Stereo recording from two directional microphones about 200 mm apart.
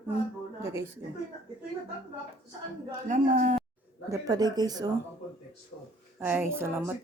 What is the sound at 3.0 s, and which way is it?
Speech, 40° right (ahead or behind).